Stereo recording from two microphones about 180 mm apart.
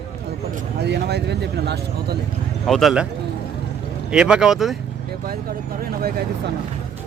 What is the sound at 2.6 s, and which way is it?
Speech, centre (ahead or behind).